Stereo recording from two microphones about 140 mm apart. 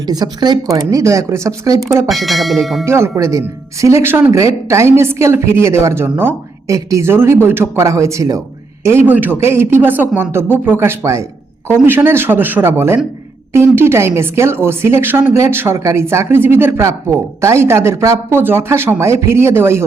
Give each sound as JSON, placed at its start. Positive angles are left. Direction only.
{"t": 0.0, "sound": "speech", "side_deg": -30}
{"t": 2.0, "sound": "speech", "side_deg": 0}
{"t": 2.8, "sound": "speech", "side_deg": -20}